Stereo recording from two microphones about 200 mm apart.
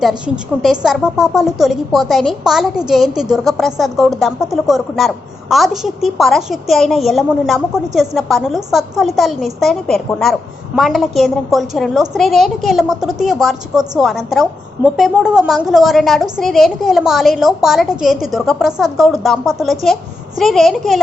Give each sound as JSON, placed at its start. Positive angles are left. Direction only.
{"t": 0.6, "sound": "a woman's voice", "side_deg": 0}